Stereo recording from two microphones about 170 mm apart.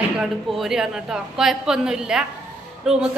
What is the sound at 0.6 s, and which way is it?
A woman's voice, 5° right (ahead or behind).